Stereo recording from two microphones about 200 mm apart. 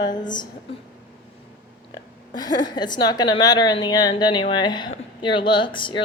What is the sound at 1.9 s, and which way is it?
A woman's voice, 20° left (ahead or behind).